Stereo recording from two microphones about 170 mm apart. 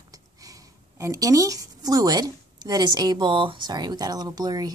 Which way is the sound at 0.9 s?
20° right (ahead or behind).